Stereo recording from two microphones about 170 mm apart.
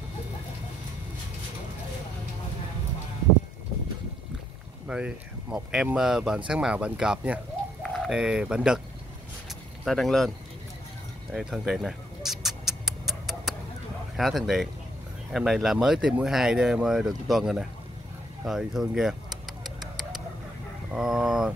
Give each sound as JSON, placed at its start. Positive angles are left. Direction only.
{"t": 4.8, "sound": "speech", "side_deg": -5}
{"t": 9.8, "sound": "speech", "side_deg": 0}
{"t": 11.3, "sound": "rodents", "side_deg": 0}
{"t": 14.1, "sound": "speech", "side_deg": 0}
{"t": 20.9, "sound": "speech", "side_deg": -5}